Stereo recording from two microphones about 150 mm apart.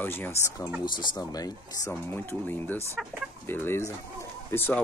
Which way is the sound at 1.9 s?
15° left (ahead or behind).